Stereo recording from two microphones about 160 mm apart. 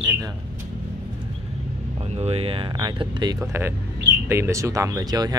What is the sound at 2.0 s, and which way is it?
Speech, 40° right (ahead or behind).